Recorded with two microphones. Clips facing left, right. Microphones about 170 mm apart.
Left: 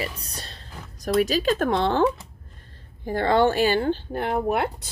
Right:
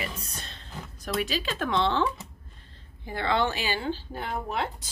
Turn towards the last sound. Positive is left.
turn(degrees=60)  # may be behind; listen again after turning